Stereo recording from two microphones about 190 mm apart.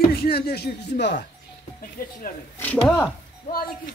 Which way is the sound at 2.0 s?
50° left (ahead or behind).